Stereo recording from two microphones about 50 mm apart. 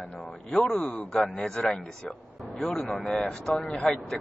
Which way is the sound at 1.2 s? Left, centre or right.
Left.